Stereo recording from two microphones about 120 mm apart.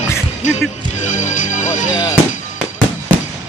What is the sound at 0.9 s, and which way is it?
Speech, 90° left.